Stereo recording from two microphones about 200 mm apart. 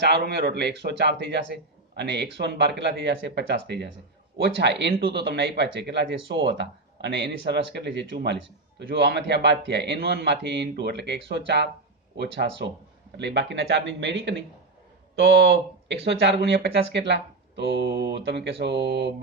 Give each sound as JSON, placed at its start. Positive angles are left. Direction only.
{"t": 0.0, "sound": "speech", "side_deg": -55}